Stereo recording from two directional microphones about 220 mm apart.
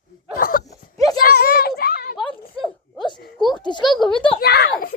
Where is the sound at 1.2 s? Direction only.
45° left (ahead or behind).